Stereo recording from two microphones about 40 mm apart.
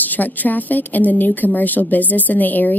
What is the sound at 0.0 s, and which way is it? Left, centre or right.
A woman's voice, left.